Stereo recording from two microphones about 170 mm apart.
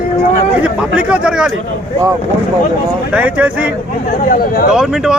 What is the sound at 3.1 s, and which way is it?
Speech, 10° right (ahead or behind).